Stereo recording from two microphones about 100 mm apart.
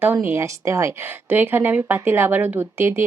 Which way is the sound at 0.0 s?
20° right (ahead or behind).